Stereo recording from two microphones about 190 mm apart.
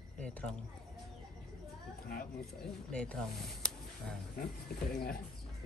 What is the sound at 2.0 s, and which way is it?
Speech, 50° left (ahead or behind).